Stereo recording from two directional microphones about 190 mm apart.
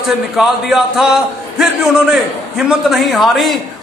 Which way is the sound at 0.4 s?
Centre (ahead or behind).